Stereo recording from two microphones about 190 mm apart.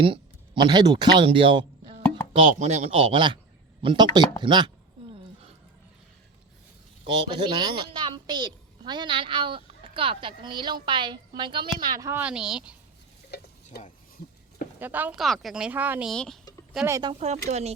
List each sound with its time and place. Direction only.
0.0 s a woman's voice: 25° right (ahead or behind)
4.4 s a sound: 25° right (ahead or behind)
7.0 s a woman's voice: 25° right (ahead or behind); by 12.7 s 5° right (ahead or behind)
13.3 s stir: 60° left (ahead or behind)
14.8 s speech: 10° right (ahead or behind)
16.7 s speech: 15° right (ahead or behind)
17.2 s speech: 35° right (ahead or behind)